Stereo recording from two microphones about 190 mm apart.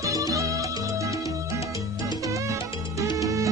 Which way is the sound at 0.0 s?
15° right (ahead or behind).